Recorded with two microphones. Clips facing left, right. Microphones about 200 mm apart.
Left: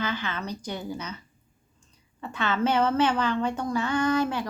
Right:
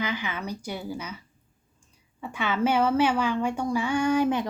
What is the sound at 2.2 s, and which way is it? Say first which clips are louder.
A woman's voice: even; 10° right (ahead or behind).